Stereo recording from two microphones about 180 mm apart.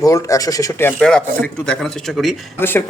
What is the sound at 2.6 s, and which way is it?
Speech, 10° left (ahead or behind).